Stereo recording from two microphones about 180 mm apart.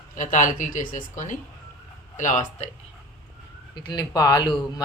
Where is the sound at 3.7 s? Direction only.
25° left (ahead or behind).